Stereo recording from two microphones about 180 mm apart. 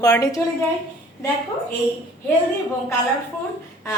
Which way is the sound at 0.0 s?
20° left (ahead or behind).